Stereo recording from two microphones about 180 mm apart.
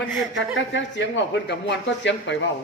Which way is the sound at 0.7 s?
85° left.